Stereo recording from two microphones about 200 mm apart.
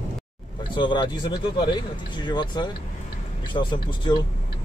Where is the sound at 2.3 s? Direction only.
20° left (ahead or behind).